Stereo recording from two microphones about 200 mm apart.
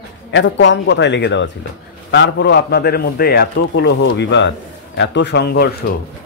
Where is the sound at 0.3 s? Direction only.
65° left (ahead or behind).